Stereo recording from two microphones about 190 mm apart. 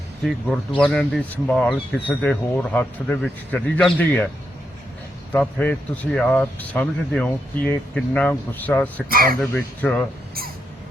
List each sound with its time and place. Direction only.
0.3 s a man's voice: 5° left (ahead or behind)
5.3 s a man's voice: 5° left (ahead or behind)
9.0 s speech: 50° right (ahead or behind)
9.5 s a man's voice: 10° left (ahead or behind)